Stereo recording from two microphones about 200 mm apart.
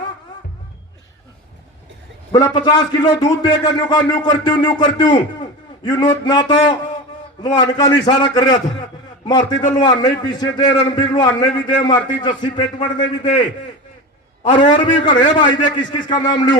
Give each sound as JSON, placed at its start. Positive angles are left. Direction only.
{"t": 2.3, "sound": "a man's voice", "side_deg": 20}
{"t": 7.8, "sound": "a man's voice", "side_deg": 20}
{"t": 14.4, "sound": "a man's voice", "side_deg": 25}